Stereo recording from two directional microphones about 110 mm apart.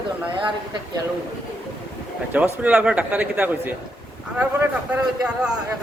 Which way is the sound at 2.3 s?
15° right (ahead or behind).